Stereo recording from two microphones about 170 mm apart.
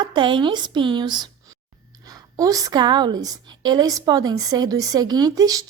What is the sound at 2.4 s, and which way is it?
A woman's voice, 20° right (ahead or behind).